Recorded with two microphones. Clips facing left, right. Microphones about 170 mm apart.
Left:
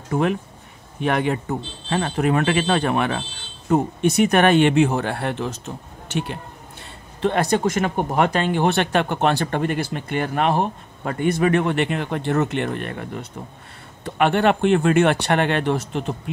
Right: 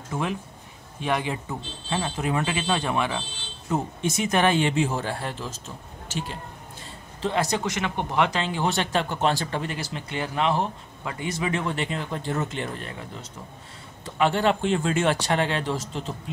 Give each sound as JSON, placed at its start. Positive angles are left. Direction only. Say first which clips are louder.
{"t": 0.1, "sound": "speech", "louder": "left 8 dB", "side_deg": 60}